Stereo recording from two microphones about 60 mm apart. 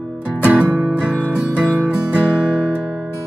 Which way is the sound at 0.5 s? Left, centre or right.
Centre.